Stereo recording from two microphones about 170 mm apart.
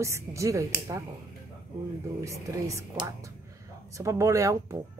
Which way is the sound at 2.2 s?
20° right (ahead or behind).